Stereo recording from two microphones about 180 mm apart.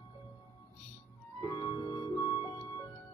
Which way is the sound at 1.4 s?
20° left (ahead or behind).